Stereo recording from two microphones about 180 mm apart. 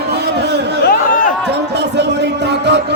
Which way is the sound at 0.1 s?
65° right (ahead or behind).